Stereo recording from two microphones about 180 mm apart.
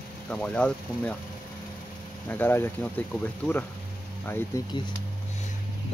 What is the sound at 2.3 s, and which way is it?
Speech, 10° left (ahead or behind).